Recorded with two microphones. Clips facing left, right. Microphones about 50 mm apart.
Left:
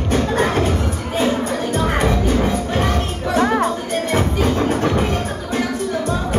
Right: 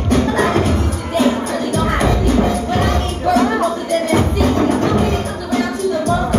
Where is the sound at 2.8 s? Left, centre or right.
Left.